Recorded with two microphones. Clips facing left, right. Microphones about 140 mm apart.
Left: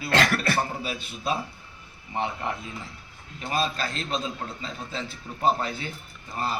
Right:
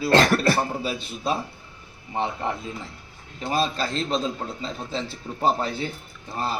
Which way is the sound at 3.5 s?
35° right (ahead or behind).